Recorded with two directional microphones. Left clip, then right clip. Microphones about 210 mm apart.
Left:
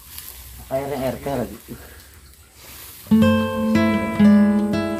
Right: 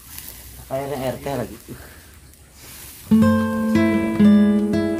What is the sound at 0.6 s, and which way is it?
Speech, 5° right (ahead or behind).